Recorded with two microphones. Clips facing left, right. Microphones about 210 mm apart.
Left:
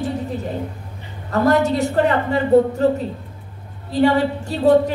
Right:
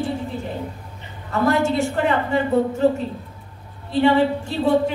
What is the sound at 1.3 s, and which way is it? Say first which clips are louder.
A woman's voice: left 3 dB; 40° left (ahead or behind).